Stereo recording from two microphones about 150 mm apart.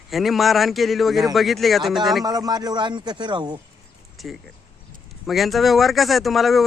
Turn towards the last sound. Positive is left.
turn(degrees=0)  # may be behind; listen again after turning